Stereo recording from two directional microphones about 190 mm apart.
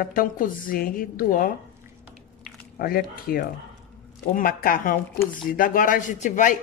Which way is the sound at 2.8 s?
50° left (ahead or behind).